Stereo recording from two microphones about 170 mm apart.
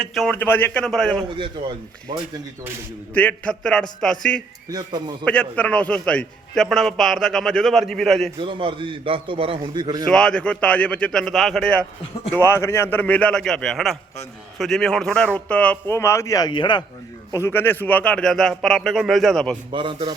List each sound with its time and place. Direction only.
0.0 s a man's voice: centre (ahead or behind)
0.3 s speech: 10° left (ahead or behind)
3.2 s a man's voice: 10° left (ahead or behind)
4.7 s a man's voice: 25° right (ahead or behind)
5.2 s a man's voice: 5° left (ahead or behind)
8.4 s a man's voice: 30° right (ahead or behind)
10.1 s a man's voice: 5° left (ahead or behind)
12.3 s a man's voice: 15° left (ahead or behind)
17.3 s a man's voice: 15° left (ahead or behind)
19.7 s a man's voice: 30° right (ahead or behind)